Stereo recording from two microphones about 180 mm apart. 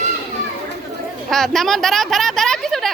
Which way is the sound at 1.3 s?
Centre (ahead or behind).